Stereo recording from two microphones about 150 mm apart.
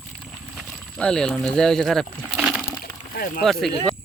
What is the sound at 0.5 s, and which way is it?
Speech, 5° left (ahead or behind).